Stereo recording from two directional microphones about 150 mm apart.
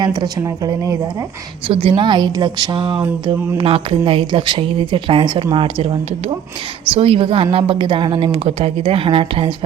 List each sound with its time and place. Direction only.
0.0 s a woman's voice: 25° right (ahead or behind)
1.6 s speech: 40° right (ahead or behind)